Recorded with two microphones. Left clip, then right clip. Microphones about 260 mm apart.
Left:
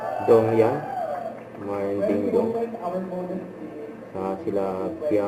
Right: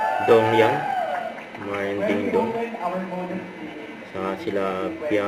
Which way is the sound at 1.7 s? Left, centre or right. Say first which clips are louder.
Even; centre.